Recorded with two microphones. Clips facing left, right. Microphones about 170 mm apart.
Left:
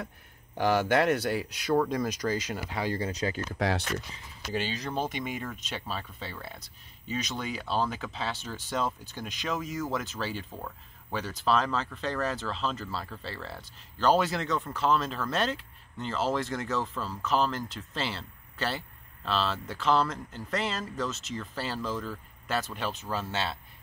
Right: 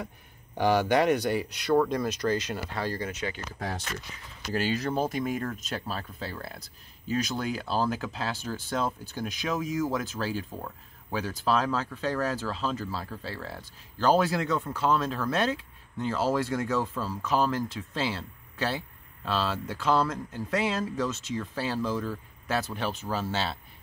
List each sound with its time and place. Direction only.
0.6 s speech: 5° left (ahead or behind)
3.0 s speech: 35° left (ahead or behind)
3.5 s speech: 80° left
4.5 s speech: 5° right (ahead or behind)
19.2 s speech: 10° right (ahead or behind)